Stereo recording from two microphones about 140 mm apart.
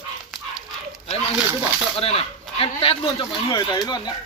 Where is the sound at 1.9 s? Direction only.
45° left (ahead or behind).